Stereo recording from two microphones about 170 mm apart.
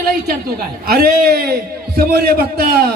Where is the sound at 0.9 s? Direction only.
65° right (ahead or behind).